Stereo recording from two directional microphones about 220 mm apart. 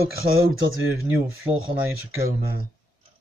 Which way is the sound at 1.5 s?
30° right (ahead or behind).